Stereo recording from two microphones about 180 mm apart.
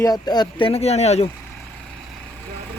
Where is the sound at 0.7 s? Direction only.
35° left (ahead or behind).